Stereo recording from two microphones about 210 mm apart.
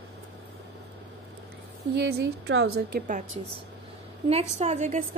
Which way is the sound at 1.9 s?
55° right (ahead or behind).